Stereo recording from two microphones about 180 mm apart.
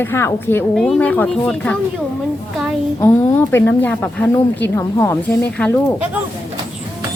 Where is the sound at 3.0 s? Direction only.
10° left (ahead or behind).